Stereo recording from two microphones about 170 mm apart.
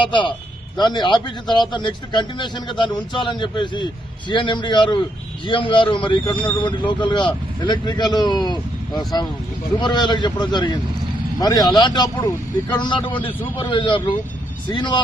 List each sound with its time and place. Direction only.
0.0 s speech: 30° left (ahead or behind)
9.8 s speech: 25° left (ahead or behind)